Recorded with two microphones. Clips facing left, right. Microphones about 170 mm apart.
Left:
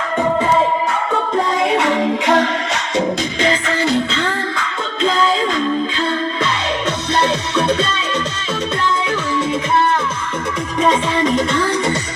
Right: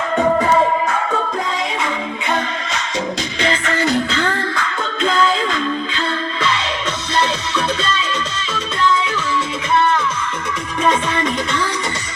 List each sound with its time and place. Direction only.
0.2 s music: 5° left (ahead or behind)
1.6 s music: 70° left (ahead or behind); by 2.8 s 85° left
3.4 s music: 35° left (ahead or behind)
5.5 s music: 40° left (ahead or behind)
7.1 s music: 60° left (ahead or behind)
11.1 s music: 30° left (ahead or behind)